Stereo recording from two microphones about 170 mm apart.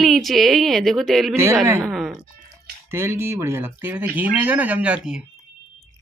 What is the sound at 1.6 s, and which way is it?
Speech, 15° right (ahead or behind).